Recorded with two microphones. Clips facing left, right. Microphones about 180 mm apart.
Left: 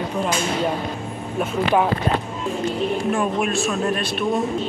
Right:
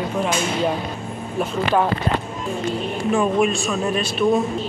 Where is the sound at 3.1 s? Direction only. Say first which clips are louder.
Right 3 dB; centre (ahead or behind).